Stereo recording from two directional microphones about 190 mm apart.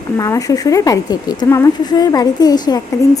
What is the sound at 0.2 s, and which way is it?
A woman's voice, 20° left (ahead or behind).